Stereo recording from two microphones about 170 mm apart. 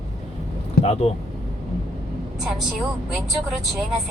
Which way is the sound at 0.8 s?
65° left (ahead or behind).